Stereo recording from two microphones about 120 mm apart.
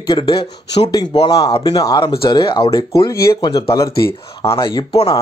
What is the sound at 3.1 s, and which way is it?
Speech, 25° left (ahead or behind).